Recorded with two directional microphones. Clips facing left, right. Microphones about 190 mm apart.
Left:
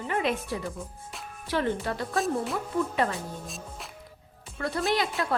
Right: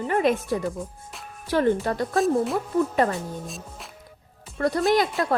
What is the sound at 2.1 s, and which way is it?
Music, centre (ahead or behind).